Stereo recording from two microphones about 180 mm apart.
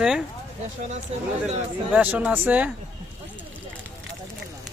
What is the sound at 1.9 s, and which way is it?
Speech, 10° right (ahead or behind).